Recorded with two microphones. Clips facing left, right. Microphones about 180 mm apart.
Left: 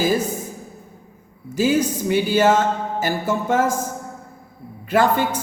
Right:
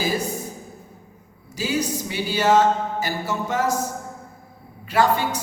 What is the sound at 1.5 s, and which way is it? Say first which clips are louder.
Music: left 6 dB; 50° left (ahead or behind).